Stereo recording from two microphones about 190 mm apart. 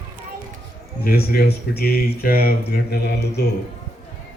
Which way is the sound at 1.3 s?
55° left (ahead or behind).